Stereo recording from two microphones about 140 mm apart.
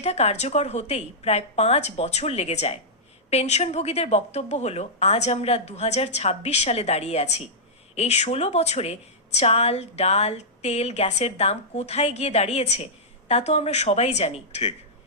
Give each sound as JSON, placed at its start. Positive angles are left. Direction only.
{"t": 0.0, "sound": "a woman's voice", "side_deg": 50}